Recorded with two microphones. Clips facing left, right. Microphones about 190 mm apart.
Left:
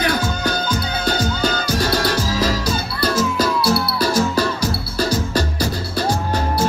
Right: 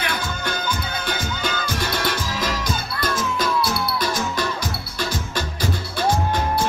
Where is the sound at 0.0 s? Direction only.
35° left (ahead or behind).